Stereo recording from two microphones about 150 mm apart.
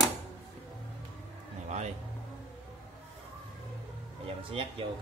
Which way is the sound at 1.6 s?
50° right (ahead or behind).